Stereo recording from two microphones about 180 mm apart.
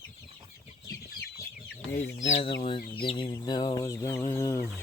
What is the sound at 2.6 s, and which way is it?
Speech, 30° left (ahead or behind).